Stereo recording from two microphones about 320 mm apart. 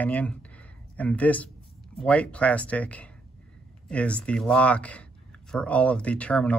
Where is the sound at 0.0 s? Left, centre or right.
Centre.